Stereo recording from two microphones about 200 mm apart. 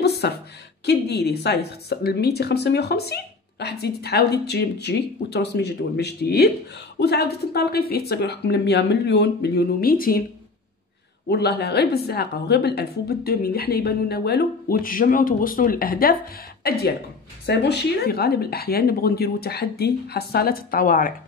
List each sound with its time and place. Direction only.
0.2 s a woman's voice: 55° left (ahead or behind)
11.2 s a woman's voice: 55° left (ahead or behind)